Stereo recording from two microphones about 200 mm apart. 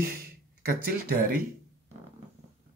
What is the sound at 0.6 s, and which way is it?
Speech, 50° right (ahead or behind).